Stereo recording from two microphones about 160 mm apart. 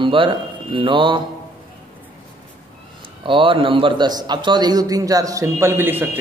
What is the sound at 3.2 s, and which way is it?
A man's voice, 30° right (ahead or behind).